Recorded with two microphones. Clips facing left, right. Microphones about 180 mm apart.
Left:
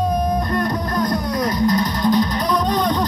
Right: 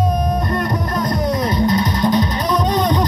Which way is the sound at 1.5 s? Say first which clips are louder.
Right 1 dB; 25° right (ahead or behind).